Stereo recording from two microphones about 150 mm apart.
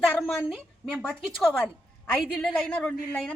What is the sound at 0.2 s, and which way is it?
A woman's voice, centre (ahead or behind).